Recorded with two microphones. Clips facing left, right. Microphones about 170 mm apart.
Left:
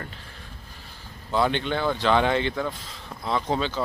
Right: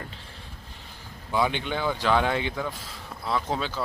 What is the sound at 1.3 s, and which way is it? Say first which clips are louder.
Speech: left 2 dB; 10° right (ahead or behind).